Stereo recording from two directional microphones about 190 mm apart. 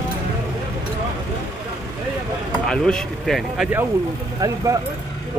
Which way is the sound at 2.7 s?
5° left (ahead or behind).